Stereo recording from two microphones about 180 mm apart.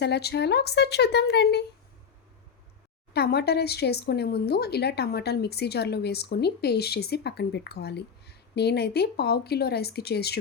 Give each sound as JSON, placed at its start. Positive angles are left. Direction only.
{"t": 0.0, "sound": "speech", "side_deg": 65}
{"t": 3.1, "sound": "speech", "side_deg": 65}